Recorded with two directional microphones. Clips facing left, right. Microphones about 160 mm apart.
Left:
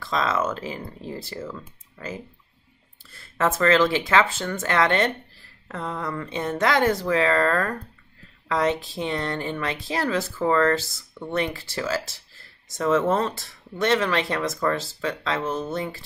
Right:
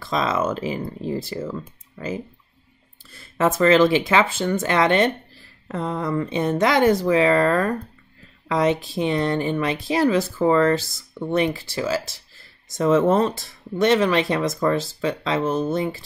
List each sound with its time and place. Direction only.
0.0 s speech: 15° right (ahead or behind)